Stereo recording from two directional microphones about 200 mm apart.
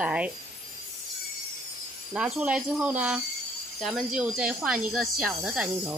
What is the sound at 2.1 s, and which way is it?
Speech, 5° right (ahead or behind).